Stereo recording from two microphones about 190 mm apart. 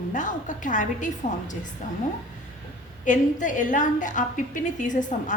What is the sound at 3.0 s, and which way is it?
A woman's voice, 40° left (ahead or behind).